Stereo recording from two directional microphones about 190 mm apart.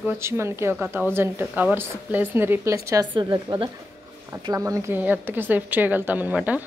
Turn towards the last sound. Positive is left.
turn(degrees=-10)  # may be behind; listen again after turning